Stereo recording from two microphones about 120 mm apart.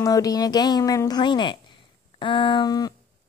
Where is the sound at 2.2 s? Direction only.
45° left (ahead or behind).